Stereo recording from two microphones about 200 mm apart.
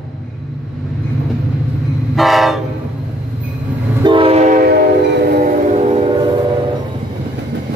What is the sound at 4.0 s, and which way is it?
Train, 25° right (ahead or behind).